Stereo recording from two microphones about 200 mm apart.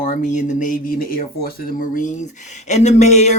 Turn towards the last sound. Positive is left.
turn(degrees=35)  # may be behind; listen again after turning